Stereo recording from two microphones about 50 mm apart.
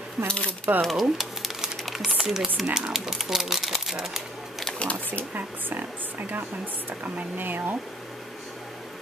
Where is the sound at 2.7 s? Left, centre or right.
Centre.